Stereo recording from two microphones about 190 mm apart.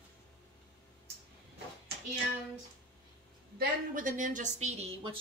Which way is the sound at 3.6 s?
45° right (ahead or behind).